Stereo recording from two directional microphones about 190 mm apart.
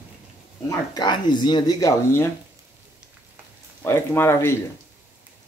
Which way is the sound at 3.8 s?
10° left (ahead or behind).